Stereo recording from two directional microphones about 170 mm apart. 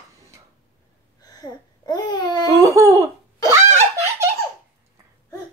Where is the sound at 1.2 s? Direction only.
25° left (ahead or behind).